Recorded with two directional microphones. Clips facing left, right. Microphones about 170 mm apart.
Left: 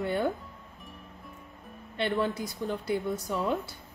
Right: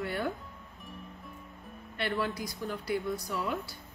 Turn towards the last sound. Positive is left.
turn(degrees=25)  # may be behind; listen again after turning